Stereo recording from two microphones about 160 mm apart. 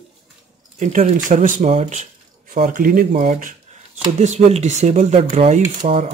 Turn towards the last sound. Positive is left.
turn(degrees=-45)  # may be behind; listen again after turning